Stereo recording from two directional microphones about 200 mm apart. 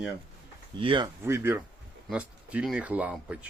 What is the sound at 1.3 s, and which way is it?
Speech, 10° right (ahead or behind).